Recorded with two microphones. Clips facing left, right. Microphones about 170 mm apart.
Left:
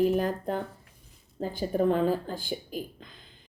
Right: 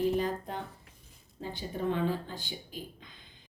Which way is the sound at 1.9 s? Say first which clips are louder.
Left 6 dB; 40° left (ahead or behind).